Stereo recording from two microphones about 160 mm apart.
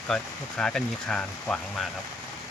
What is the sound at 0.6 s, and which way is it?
Speech, 5° left (ahead or behind).